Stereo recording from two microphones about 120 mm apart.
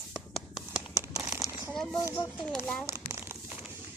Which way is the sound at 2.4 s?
5° left (ahead or behind).